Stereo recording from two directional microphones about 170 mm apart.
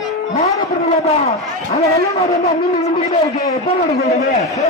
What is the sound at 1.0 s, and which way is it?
Speech, 40° left (ahead or behind).